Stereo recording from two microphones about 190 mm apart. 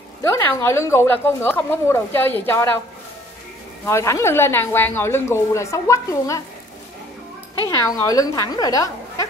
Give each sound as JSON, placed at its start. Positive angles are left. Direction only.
{"t": 0.2, "sound": "a woman's voice", "side_deg": 15}
{"t": 3.8, "sound": "a woman's voice", "side_deg": 15}
{"t": 7.6, "sound": "speech", "side_deg": 15}